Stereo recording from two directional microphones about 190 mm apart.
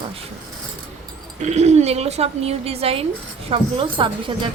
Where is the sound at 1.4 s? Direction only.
35° right (ahead or behind).